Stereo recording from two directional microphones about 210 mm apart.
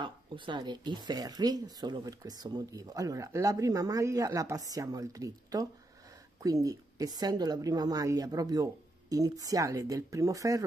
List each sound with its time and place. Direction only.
0.0 s speech: 20° right (ahead or behind)